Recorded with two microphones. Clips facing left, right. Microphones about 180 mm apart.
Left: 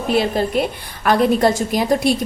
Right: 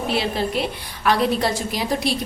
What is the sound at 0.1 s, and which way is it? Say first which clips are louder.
A woman's voice: left 7 dB; 50° left (ahead or behind).